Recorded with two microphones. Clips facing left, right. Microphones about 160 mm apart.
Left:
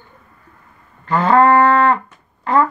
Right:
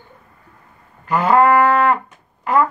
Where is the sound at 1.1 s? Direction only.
10° right (ahead or behind).